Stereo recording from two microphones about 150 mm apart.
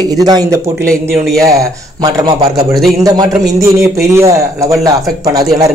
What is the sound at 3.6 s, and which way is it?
A man's voice, 20° right (ahead or behind).